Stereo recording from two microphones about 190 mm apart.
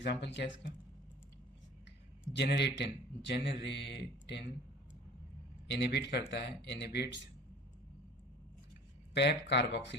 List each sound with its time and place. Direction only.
0.0 s a man's voice: 65° left (ahead or behind)
2.3 s a man's voice: 65° left (ahead or behind)
5.7 s a man's voice: 60° left (ahead or behind)
9.1 s a man's voice: 65° left (ahead or behind)